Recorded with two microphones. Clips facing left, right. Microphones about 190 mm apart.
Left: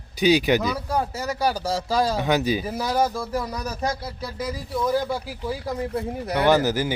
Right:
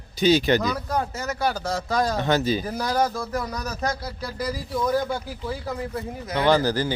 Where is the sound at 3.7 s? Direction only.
25° left (ahead or behind).